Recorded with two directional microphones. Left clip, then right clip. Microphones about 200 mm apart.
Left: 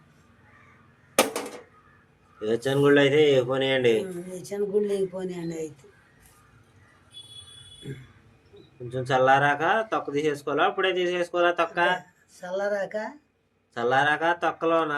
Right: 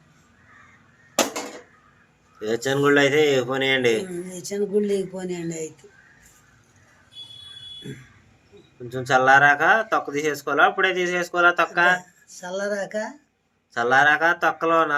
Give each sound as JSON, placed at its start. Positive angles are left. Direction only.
{"t": 2.4, "sound": "speech", "side_deg": 0}
{"t": 4.4, "sound": "speech", "side_deg": -20}
{"t": 8.9, "sound": "speech", "side_deg": 0}
{"t": 12.4, "sound": "speech", "side_deg": -20}
{"t": 13.7, "sound": "speech", "side_deg": 0}